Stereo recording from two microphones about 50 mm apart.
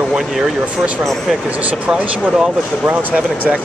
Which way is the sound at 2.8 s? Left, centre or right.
Right.